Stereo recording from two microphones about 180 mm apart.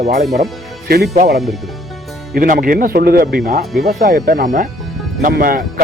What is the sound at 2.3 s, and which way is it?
Speech, 55° right (ahead or behind).